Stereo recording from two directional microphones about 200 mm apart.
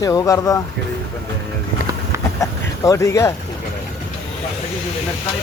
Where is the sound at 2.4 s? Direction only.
15° left (ahead or behind).